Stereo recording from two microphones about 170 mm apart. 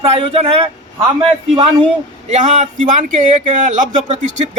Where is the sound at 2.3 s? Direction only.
40° right (ahead or behind).